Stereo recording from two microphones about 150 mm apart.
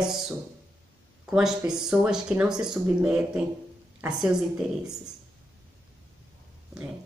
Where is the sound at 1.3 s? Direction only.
5° right (ahead or behind).